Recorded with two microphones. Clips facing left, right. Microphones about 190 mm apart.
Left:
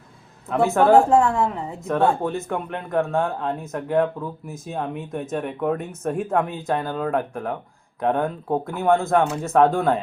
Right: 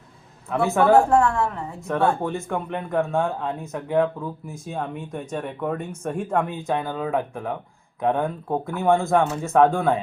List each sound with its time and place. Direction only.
0.5 s speech: centre (ahead or behind)
1.1 s a woman's voice: 20° left (ahead or behind)
2.3 s speech: centre (ahead or behind)